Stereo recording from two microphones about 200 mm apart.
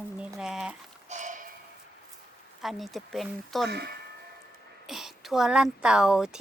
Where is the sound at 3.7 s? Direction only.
55° right (ahead or behind).